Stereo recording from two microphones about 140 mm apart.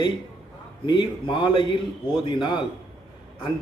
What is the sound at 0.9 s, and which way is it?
Speech, 35° left (ahead or behind).